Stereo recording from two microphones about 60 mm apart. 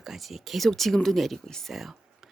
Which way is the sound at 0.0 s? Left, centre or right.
Centre.